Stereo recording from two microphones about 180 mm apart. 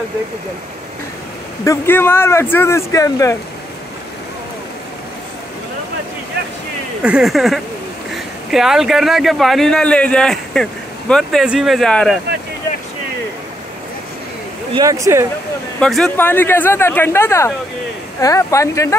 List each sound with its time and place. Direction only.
1.6 s speech: 15° left (ahead or behind)
7.0 s a man's voice: 5° right (ahead or behind)
14.7 s speech: 20° right (ahead or behind)
15.8 s speech: 5° left (ahead or behind)